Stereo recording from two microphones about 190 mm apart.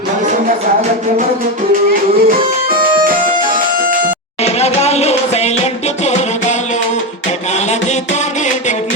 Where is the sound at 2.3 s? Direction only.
50° right (ahead or behind).